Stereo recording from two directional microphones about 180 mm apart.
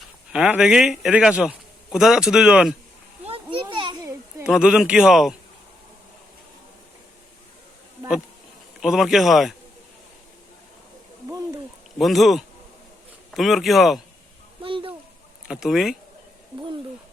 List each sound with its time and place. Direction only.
0.3 s a man's voice: 5° right (ahead or behind)
3.2 s children playing: 30° right (ahead or behind)
4.4 s a man's voice: 5° right (ahead or behind)
8.8 s a man's voice: centre (ahead or behind)
11.3 s a sound: 20° right (ahead or behind)
11.9 s a man's voice: centre (ahead or behind)
14.6 s a sound: 30° right (ahead or behind)
15.4 s a man's voice: centre (ahead or behind)